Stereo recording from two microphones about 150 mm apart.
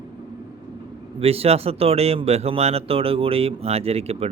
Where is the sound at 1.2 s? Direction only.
40° right (ahead or behind).